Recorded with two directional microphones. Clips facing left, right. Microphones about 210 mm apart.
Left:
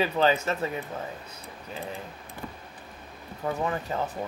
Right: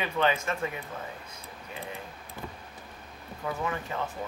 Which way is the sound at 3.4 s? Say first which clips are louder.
Left 4 dB; 35° left (ahead or behind).